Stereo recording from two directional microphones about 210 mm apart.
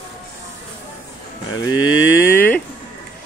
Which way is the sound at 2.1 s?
10° left (ahead or behind).